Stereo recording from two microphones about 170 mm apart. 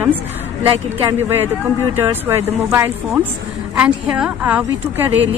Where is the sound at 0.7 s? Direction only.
15° right (ahead or behind).